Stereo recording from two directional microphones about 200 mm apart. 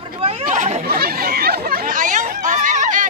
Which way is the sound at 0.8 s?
50° right (ahead or behind).